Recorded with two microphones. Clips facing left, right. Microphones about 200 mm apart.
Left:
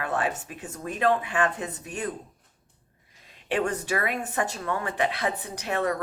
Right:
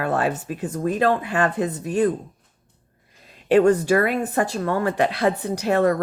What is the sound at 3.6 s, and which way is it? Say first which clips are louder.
Speech: right 11 dB; 35° right (ahead or behind).